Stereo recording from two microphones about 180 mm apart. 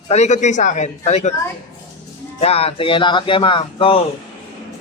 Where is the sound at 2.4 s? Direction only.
35° left (ahead or behind).